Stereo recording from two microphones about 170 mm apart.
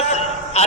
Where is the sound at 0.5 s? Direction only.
40° left (ahead or behind).